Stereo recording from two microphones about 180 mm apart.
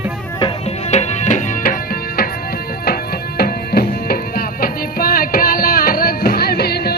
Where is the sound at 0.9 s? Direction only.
40° left (ahead or behind).